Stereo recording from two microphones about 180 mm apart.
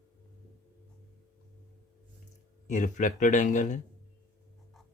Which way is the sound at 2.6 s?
45° left (ahead or behind).